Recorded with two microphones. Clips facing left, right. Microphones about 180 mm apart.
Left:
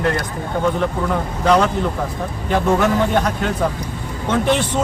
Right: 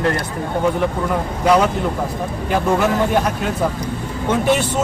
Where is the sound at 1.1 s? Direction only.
10° right (ahead or behind).